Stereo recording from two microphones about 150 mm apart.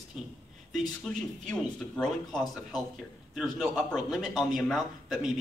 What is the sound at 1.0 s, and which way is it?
A man's voice, 5° left (ahead or behind).